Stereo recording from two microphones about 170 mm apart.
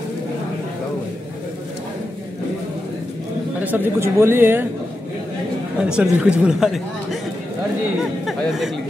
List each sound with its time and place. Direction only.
3.5 s speech: 10° right (ahead or behind)
5.8 s a woman's voice: 5° right (ahead or behind)
8.3 s a woman's voice: centre (ahead or behind)